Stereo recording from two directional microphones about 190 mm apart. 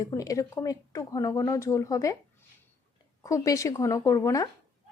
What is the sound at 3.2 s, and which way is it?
A woman's voice, 15° left (ahead or behind).